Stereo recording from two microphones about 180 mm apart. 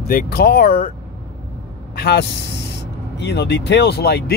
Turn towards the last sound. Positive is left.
turn(degrees=65)  # may be behind; listen again after turning